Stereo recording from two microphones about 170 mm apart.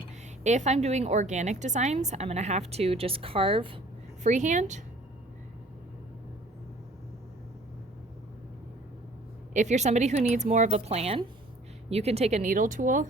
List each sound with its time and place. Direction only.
0.4 s a woman's voice: 45° right (ahead or behind)
4.2 s speech: 45° right (ahead or behind)
9.5 s a woman's voice: 45° right (ahead or behind)